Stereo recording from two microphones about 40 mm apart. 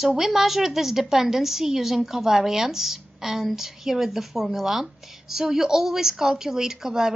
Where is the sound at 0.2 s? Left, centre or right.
Centre.